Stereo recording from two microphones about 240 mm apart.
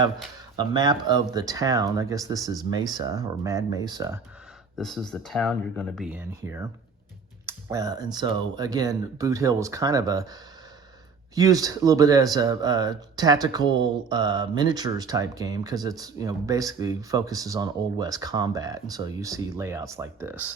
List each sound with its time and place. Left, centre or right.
0.5 s speech: centre
4.8 s speech: centre
11.3 s speech: centre